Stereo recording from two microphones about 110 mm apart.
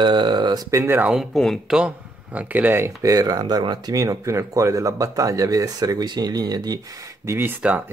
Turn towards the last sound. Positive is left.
turn(degrees=-15)  # may be behind; listen again after turning